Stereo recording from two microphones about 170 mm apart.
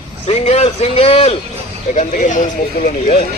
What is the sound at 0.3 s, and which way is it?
A man's voice, 40° left (ahead or behind).